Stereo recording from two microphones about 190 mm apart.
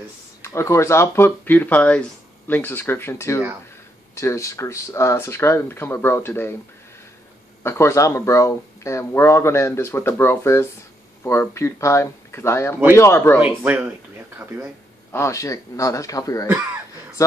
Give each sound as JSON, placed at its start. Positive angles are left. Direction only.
{"t": 0.4, "sound": "speech", "side_deg": 15}
{"t": 7.6, "sound": "speech", "side_deg": 15}
{"t": 13.4, "sound": "speech", "side_deg": -10}
{"t": 15.1, "sound": "speech", "side_deg": 15}